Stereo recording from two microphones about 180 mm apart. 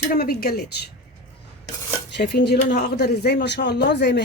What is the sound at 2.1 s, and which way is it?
Speech, 70° left (ahead or behind).